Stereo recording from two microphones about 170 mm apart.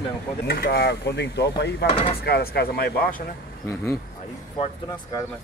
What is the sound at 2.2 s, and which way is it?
Speech, 70° left (ahead or behind).